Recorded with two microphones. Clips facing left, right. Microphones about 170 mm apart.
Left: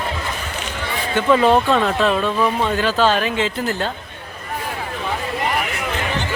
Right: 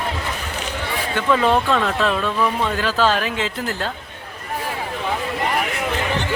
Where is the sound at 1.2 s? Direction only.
5° left (ahead or behind).